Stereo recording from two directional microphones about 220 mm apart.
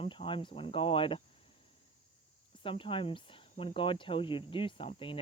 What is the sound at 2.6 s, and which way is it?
Speech, 25° left (ahead or behind).